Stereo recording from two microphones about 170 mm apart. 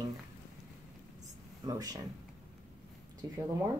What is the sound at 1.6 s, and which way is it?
Speech, 20° right (ahead or behind).